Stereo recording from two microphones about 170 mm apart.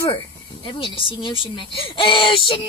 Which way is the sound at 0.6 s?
30° left (ahead or behind).